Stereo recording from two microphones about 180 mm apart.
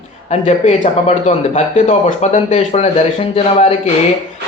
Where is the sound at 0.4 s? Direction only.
40° left (ahead or behind).